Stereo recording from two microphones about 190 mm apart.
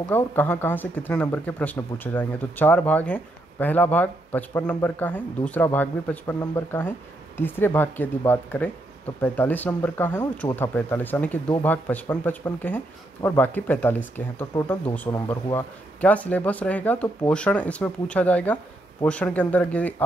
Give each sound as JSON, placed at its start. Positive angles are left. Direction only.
{"t": 0.1, "sound": "speech", "side_deg": 10}